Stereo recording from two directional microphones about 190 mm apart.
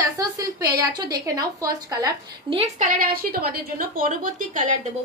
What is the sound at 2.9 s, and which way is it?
A woman's voice, 50° right (ahead or behind).